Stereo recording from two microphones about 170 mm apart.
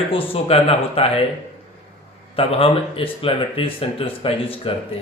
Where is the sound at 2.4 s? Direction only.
35° left (ahead or behind).